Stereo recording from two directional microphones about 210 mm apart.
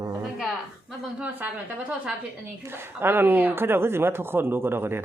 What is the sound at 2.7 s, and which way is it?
Speech, 10° right (ahead or behind).